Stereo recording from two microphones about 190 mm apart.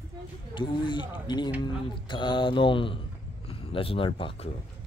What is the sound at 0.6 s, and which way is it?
Mantra, 25° left (ahead or behind).